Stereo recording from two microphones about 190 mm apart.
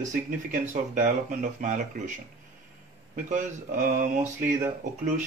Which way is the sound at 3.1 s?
45° right (ahead or behind).